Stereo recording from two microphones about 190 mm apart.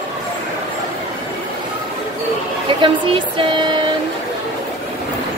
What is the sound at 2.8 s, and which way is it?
Music, 25° right (ahead or behind).